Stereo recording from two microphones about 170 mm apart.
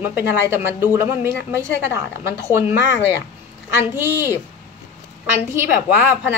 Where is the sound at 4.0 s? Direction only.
10° right (ahead or behind).